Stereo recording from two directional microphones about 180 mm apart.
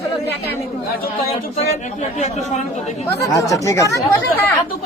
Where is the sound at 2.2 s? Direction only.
40° left (ahead or behind).